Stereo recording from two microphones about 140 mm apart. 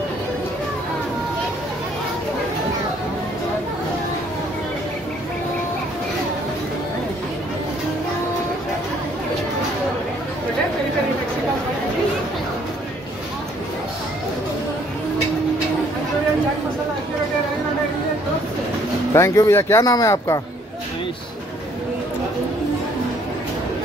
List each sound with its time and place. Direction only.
19.1 s speech: 20° left (ahead or behind)